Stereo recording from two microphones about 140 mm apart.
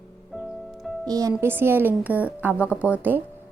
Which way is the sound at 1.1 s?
25° right (ahead or behind).